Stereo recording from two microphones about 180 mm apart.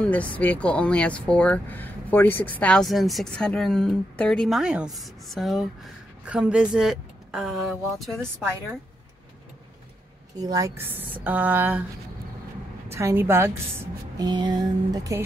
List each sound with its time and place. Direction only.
0.0 s speech: 10° left (ahead or behind)
10.3 s a woman's voice: 20° right (ahead or behind)
12.9 s a woman's voice: 15° right (ahead or behind)